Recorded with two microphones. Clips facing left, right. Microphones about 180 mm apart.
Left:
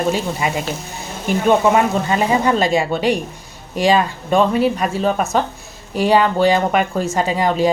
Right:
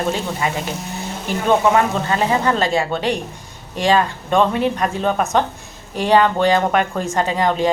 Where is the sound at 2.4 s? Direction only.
10° left (ahead or behind).